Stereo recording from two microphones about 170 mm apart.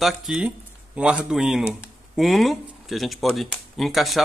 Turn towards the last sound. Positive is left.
turn(degrees=0)  # may be behind; listen again after turning